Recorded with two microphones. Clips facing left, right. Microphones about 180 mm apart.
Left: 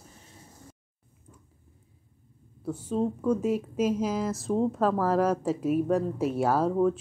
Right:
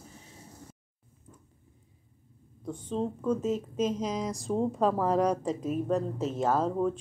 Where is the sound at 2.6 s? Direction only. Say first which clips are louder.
Left 4 dB; 5° left (ahead or behind).